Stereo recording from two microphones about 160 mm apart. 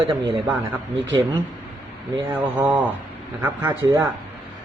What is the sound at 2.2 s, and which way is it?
Speech, 15° right (ahead or behind).